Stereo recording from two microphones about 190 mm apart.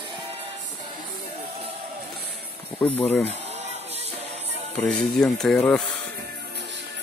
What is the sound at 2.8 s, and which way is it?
Speech, 10° left (ahead or behind).